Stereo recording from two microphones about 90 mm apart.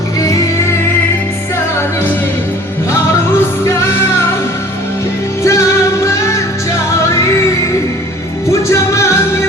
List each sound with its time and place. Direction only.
0.2 s music: 40° left (ahead or behind)
5.4 s music: 35° left (ahead or behind)
8.7 s music: 30° left (ahead or behind)